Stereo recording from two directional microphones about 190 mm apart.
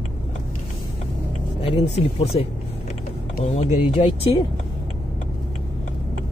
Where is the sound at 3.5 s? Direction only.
35° left (ahead or behind).